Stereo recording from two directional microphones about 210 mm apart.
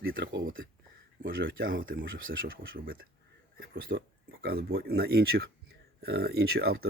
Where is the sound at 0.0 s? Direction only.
50° right (ahead or behind).